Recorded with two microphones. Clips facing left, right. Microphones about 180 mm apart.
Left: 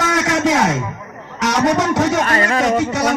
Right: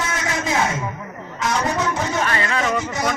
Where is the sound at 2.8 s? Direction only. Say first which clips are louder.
Left 7 dB; 70° left (ahead or behind).